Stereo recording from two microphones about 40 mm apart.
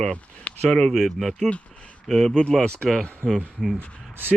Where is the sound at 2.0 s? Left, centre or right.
Centre.